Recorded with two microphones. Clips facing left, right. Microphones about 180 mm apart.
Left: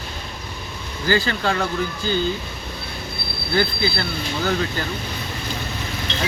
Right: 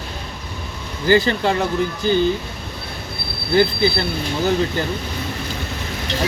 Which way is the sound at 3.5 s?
20° right (ahead or behind).